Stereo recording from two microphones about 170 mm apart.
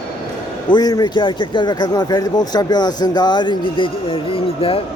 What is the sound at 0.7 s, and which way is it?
Speech, 20° left (ahead or behind).